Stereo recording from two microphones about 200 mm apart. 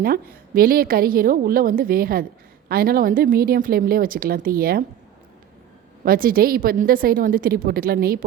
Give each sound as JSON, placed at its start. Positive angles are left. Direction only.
{"t": 0.0, "sound": "a woman's voice", "side_deg": -45}
{"t": 6.1, "sound": "a woman's voice", "side_deg": -45}